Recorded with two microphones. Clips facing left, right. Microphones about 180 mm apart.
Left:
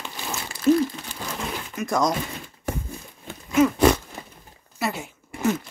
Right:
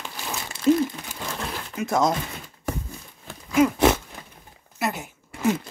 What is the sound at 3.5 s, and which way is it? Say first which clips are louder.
Pig: left 1 dB; 10° right (ahead or behind).